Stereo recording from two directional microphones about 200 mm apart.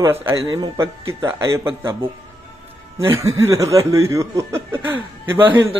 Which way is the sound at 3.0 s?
15° right (ahead or behind).